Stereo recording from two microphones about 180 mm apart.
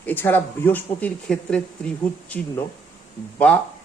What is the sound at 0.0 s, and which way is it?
Speech, 10° left (ahead or behind).